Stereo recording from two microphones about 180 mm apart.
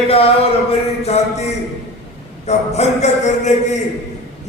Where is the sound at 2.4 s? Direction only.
40° left (ahead or behind).